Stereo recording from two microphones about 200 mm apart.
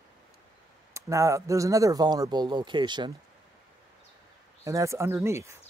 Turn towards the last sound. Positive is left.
turn(degrees=-15)  # may be behind; listen again after turning